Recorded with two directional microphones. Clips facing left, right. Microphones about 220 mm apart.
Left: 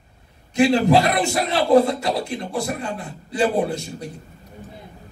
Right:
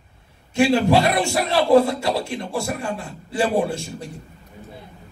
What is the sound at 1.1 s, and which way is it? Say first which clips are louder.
A man's voice: right 1 dB; 20° left (ahead or behind).